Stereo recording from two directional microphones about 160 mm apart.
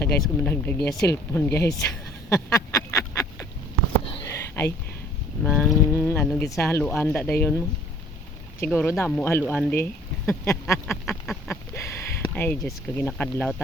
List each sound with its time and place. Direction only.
0.2 s speech: 10° left (ahead or behind)
2.3 s a sound: 20° left (ahead or behind)
5.4 s speech: 5° left (ahead or behind)
5.9 s speech: 15° left (ahead or behind)
8.6 s speech: 15° left (ahead or behind)
11.0 s duck: centre (ahead or behind)
11.4 s speech: 15° left (ahead or behind)